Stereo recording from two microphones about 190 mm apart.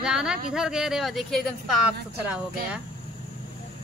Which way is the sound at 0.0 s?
5° right (ahead or behind).